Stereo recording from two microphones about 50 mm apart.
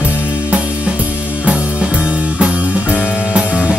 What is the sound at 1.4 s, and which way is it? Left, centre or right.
Music, right.